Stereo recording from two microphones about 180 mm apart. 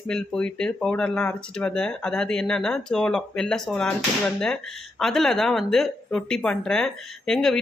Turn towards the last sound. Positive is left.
turn(degrees=0)  # may be behind; listen again after turning